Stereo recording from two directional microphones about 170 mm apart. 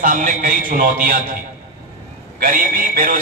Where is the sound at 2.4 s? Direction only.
55° right (ahead or behind).